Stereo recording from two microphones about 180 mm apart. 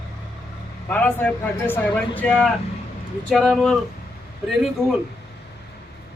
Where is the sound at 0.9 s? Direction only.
10° left (ahead or behind).